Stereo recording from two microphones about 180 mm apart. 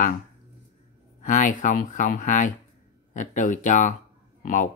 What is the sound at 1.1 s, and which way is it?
Speech, 45° left (ahead or behind).